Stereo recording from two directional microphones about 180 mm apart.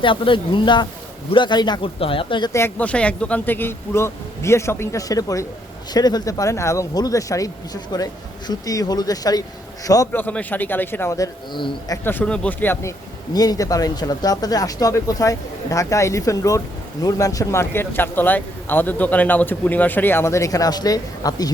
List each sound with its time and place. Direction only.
0.0 s speech: 30° left (ahead or behind)
12.0 s speech: 10° left (ahead or behind)